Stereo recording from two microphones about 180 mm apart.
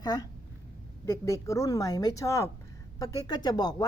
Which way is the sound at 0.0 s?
20° left (ahead or behind).